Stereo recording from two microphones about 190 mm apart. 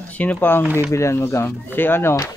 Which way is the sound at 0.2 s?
10° left (ahead or behind).